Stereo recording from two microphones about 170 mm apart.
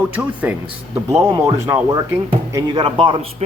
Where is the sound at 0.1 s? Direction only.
10° right (ahead or behind).